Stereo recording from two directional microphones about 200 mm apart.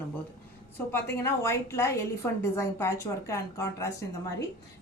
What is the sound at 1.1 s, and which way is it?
A woman's voice, 15° left (ahead or behind).